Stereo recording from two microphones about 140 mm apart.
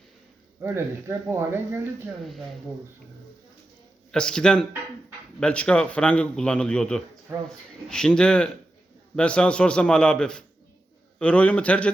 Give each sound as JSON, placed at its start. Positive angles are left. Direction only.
{"t": 0.6, "sound": "speech", "side_deg": -15}
{"t": 4.1, "sound": "a man's voice", "side_deg": 5}